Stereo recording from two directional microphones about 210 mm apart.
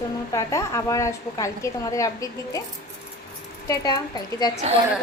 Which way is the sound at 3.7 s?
20° left (ahead or behind).